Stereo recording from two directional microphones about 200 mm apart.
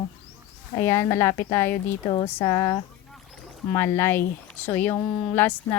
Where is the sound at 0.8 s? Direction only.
10° left (ahead or behind).